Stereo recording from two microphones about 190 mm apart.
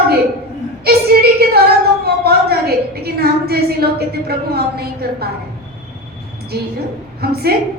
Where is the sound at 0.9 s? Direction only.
55° right (ahead or behind).